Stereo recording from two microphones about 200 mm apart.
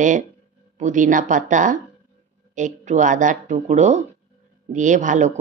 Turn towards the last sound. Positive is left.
turn(degrees=-40)  # may be behind; listen again after turning